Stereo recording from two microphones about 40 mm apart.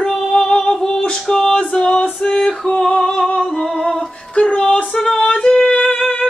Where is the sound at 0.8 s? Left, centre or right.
Centre.